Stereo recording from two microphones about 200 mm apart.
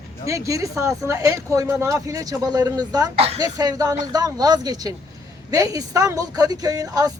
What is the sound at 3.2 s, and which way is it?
Speech, 30° right (ahead or behind).